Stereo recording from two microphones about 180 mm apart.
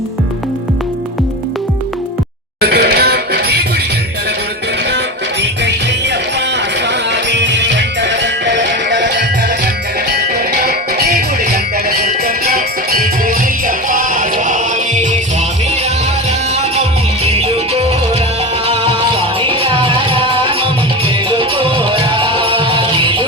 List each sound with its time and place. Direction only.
2.6 s music: 65° right (ahead or behind)
7.3 s music: 75° right (ahead or behind)
10.2 s music: 60° right (ahead or behind); by 15.2 s 40° right (ahead or behind)
17.2 s music: 35° right (ahead or behind)